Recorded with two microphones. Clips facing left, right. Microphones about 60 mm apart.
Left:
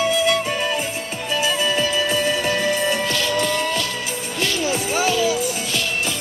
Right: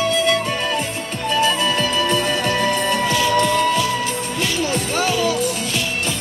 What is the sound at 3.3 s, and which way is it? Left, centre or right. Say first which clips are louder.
Music: right 5 dB; centre.